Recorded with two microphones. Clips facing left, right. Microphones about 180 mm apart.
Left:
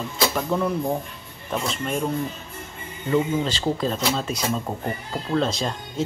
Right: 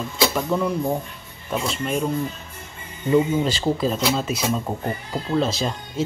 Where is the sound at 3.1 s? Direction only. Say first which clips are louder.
Right 3 dB; 10° right (ahead or behind).